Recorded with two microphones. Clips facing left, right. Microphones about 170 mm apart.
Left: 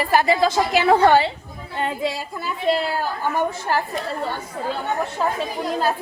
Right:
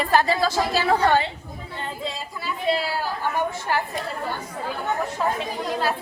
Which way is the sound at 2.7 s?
50° left (ahead or behind).